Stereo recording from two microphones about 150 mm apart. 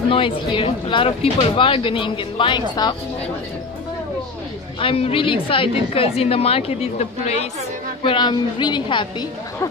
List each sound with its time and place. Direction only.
0.1 s speech: 35° left (ahead or behind)
4.7 s speech: 35° left (ahead or behind)
8.0 s speech: 35° left (ahead or behind)